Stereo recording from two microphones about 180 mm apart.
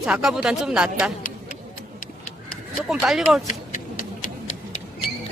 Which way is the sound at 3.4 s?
45° left (ahead or behind).